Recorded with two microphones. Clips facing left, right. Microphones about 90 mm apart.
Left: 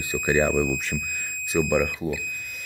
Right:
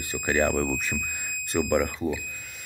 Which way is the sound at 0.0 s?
15° left (ahead or behind).